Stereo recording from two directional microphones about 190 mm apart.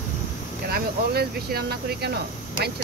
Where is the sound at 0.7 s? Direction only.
55° right (ahead or behind).